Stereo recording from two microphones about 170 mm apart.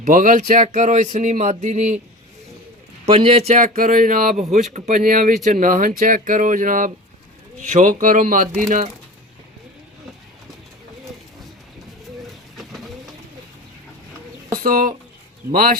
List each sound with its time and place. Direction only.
0.0 s speech: 50° right (ahead or behind)
3.1 s speech: 35° right (ahead or behind); by 8.9 s 50° right (ahead or behind)
12.5 s bird: centre (ahead or behind)
14.6 s speech: 55° right (ahead or behind)